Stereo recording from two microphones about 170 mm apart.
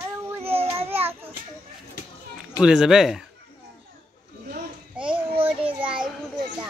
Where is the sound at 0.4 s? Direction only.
35° right (ahead or behind).